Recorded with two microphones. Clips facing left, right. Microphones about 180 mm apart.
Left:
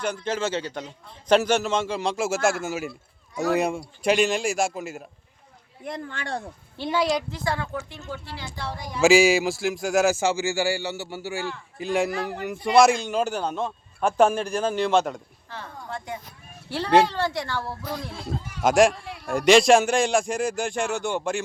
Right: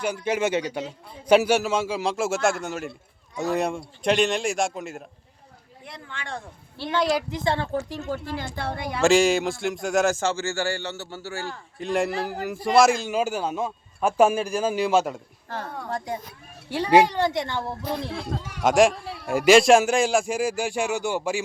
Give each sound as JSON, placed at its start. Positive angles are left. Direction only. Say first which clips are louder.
{"t": 0.0, "sound": "a man's voice", "louder": "right 2 dB", "side_deg": -10}
{"t": 5.8, "sound": "speech", "louder": "left 7 dB", "side_deg": 45}
{"t": 6.7, "sound": "speech", "louder": "left 1 dB", "side_deg": 15}
{"t": 7.0, "sound": "a man's voice", "louder": "right 1 dB", "side_deg": 0}
{"t": 7.3, "sound": "speech", "louder": "right 3 dB", "side_deg": -20}
{"t": 8.0, "sound": "speech", "louder": "right 6 dB", "side_deg": -50}
{"t": 9.0, "sound": "speech", "louder": "left 2 dB", "side_deg": 5}
{"t": 11.8, "sound": "a man's voice", "louder": "even", "side_deg": 0}
{"t": 15.4, "sound": "speech", "louder": "right 6 dB", "side_deg": -45}
{"t": 16.6, "sound": "speech", "louder": "right 1 dB", "side_deg": -15}
{"t": 18.1, "sound": "speech", "louder": "right 2 dB", "side_deg": -75}
{"t": 18.6, "sound": "a man's voice", "louder": "even", "side_deg": 0}